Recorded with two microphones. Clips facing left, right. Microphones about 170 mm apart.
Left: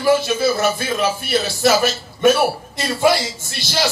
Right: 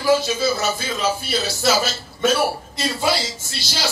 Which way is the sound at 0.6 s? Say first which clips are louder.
Left 5 dB; 55° left (ahead or behind).